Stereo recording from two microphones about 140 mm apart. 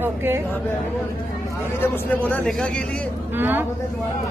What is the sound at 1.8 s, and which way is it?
Speech, 15° left (ahead or behind).